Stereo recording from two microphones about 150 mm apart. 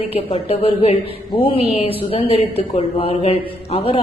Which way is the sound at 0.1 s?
40° left (ahead or behind).